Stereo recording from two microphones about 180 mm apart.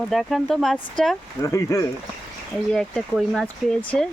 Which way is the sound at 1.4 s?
15° left (ahead or behind).